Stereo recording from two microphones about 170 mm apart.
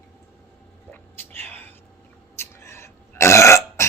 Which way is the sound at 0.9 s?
10° left (ahead or behind).